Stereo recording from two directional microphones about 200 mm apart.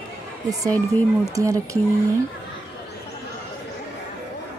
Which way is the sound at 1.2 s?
15° right (ahead or behind).